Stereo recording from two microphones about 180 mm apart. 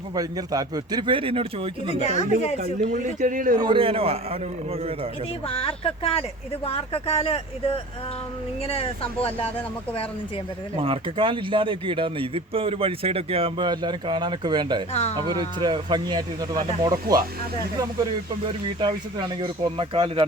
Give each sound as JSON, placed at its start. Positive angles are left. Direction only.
{"t": 0.1, "sound": "speech", "side_deg": -20}
{"t": 2.6, "sound": "a man's voice", "side_deg": -45}
{"t": 3.6, "sound": "a man's voice", "side_deg": -30}
{"t": 5.5, "sound": "speech", "side_deg": 30}
{"t": 10.8, "sound": "speech", "side_deg": -30}
{"t": 18.4, "sound": "speech", "side_deg": -25}